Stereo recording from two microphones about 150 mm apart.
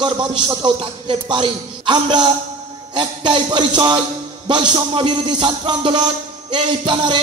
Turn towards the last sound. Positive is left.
turn(degrees=-35)  # may be behind; listen again after turning